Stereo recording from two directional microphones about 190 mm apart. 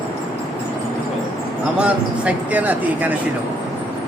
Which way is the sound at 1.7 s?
5° right (ahead or behind).